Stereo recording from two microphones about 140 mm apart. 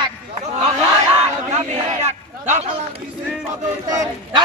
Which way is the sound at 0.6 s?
45° right (ahead or behind).